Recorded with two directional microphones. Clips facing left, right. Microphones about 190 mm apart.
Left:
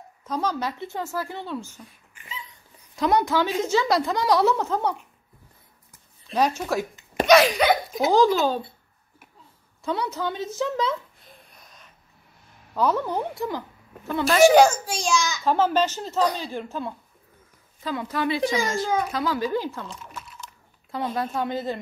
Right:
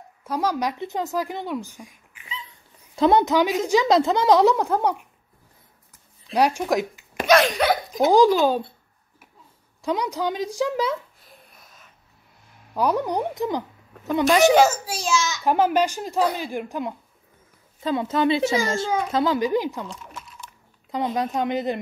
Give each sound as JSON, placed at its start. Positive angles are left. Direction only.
{"t": 0.2, "sound": "a woman's voice", "side_deg": -10}
{"t": 3.0, "sound": "a woman's voice", "side_deg": -25}
{"t": 6.3, "sound": "a woman's voice", "side_deg": -10}
{"t": 7.2, "sound": "a sound", "side_deg": 0}
{"t": 8.1, "sound": "a woman's voice", "side_deg": -15}
{"t": 9.8, "sound": "a woman's voice", "side_deg": -15}
{"t": 12.7, "sound": "a woman's voice", "side_deg": -15}
{"t": 14.5, "sound": "a child's voice", "side_deg": -5}
{"t": 15.4, "sound": "a woman's voice", "side_deg": -15}